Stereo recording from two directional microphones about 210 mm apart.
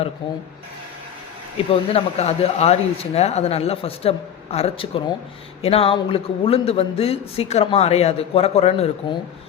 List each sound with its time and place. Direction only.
1.5 s speech: 25° left (ahead or behind)